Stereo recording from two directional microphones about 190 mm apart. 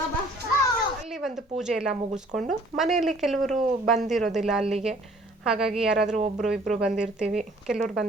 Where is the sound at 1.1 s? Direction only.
Centre (ahead or behind).